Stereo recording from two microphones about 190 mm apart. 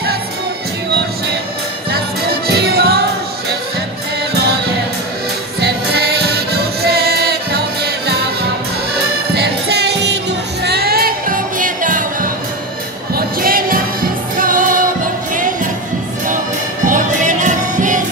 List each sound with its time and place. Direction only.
1.9 s music: 55° right (ahead or behind)
5.6 s music: 60° right (ahead or behind)
16.8 s music: 40° right (ahead or behind)